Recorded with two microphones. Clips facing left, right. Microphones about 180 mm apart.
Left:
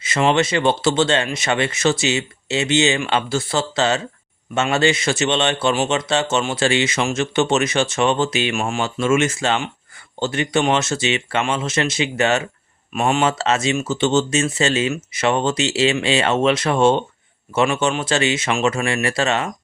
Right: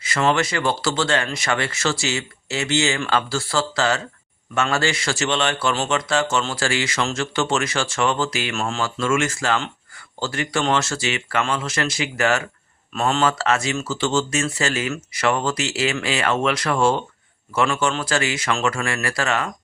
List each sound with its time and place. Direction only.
0.0 s a man's voice: 20° left (ahead or behind)